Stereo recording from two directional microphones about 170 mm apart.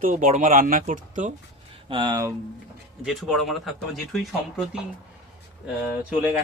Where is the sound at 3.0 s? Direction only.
Centre (ahead or behind).